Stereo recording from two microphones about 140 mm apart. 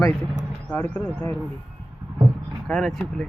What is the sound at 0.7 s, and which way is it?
Speech, 15° left (ahead or behind).